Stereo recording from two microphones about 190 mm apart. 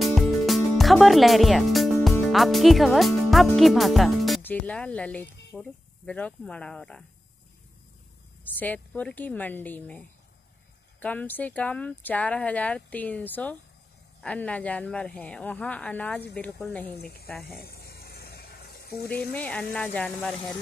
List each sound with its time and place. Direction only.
0.0 s speech: centre (ahead or behind)
8.5 s speech: 10° left (ahead or behind)
16.9 s speech: 55° left (ahead or behind)
17.5 s a sound: 55° left (ahead or behind)
19.3 s speech: 5° left (ahead or behind)